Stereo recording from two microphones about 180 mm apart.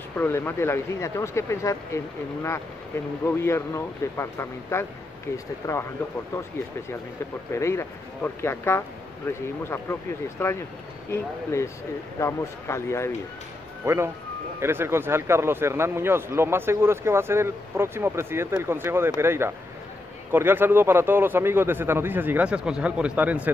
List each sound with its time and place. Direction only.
0.1 s speech: 10° left (ahead or behind)
3.3 s speech: 15° left (ahead or behind)
7.5 s speech: 15° left (ahead or behind)
13.8 s speech: 15° right (ahead or behind)